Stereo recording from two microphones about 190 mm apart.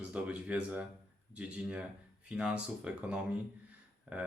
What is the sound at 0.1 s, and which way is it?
Speech, 5° right (ahead or behind).